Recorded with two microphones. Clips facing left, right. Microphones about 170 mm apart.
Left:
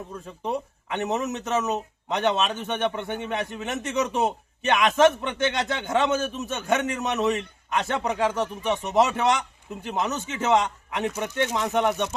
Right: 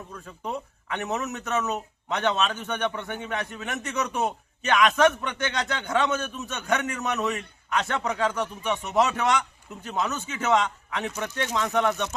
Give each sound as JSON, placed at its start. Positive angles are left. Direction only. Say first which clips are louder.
{"t": 0.1, "sound": "speech", "louder": "left 4 dB", "side_deg": 20}